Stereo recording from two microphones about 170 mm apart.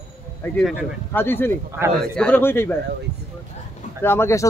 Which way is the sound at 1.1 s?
10° left (ahead or behind).